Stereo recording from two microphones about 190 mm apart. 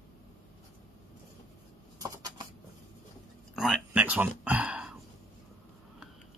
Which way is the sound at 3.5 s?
Centre (ahead or behind).